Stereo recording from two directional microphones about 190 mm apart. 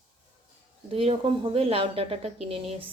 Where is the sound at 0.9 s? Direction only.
30° right (ahead or behind).